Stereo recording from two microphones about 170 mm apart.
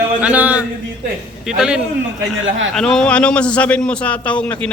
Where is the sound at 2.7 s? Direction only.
5° left (ahead or behind).